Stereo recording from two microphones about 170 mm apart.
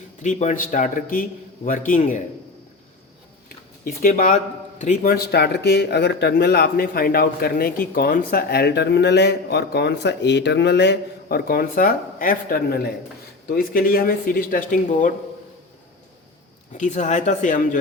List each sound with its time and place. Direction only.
0.2 s a man's voice: 45° left (ahead or behind)
3.8 s a man's voice: 45° left (ahead or behind)
16.7 s a man's voice: 45° left (ahead or behind)